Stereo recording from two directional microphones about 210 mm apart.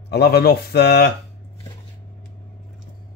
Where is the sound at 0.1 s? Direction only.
50° left (ahead or behind).